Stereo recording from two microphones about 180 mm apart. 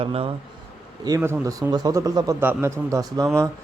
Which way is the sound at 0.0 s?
30° right (ahead or behind).